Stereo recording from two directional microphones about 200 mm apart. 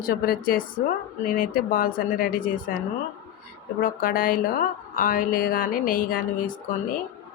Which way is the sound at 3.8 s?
45° left (ahead or behind).